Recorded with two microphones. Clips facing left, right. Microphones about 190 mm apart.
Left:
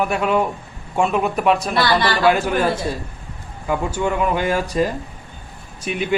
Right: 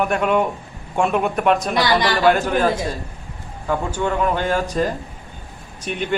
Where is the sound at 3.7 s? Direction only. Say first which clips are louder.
Left 1 dB; 10° left (ahead or behind).